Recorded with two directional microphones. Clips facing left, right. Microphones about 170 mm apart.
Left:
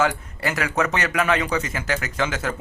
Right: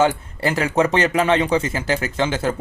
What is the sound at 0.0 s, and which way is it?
Speech, 30° right (ahead or behind).